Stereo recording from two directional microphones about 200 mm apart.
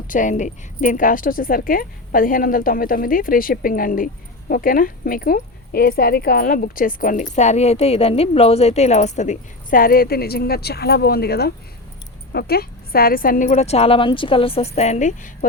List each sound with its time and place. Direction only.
0.1 s a woman's voice: 40° left (ahead or behind)